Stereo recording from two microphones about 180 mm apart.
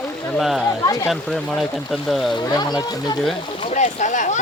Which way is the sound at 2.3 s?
20° left (ahead or behind).